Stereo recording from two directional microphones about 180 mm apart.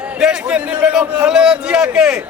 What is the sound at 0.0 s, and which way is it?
A man's voice, 5° right (ahead or behind).